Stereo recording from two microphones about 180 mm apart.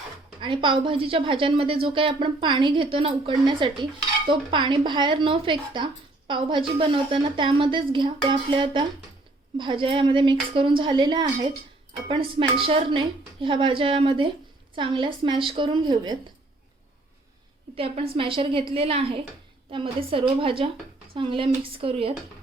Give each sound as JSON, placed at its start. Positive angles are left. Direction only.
{"t": 0.3, "sound": "speech", "side_deg": -30}
{"t": 17.7, "sound": "speech", "side_deg": -30}